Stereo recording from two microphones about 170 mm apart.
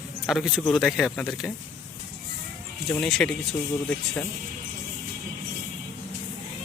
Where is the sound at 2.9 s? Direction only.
Centre (ahead or behind).